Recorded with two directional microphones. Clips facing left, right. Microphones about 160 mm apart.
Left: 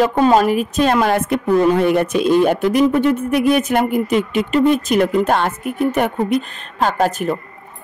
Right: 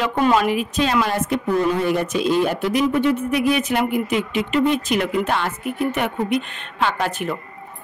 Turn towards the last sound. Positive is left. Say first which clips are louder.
# left 6 dB
turn(degrees=40)  # may be behind; listen again after turning